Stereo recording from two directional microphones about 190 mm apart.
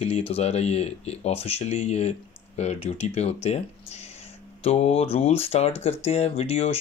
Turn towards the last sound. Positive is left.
turn(degrees=35)  # may be behind; listen again after turning